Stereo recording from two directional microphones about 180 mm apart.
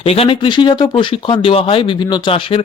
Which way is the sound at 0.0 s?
30° left (ahead or behind).